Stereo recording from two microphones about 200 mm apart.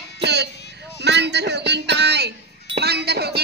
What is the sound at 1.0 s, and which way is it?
Music, 60° right (ahead or behind).